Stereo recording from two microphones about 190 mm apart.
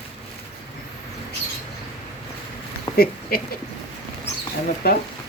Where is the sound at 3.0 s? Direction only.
50° left (ahead or behind).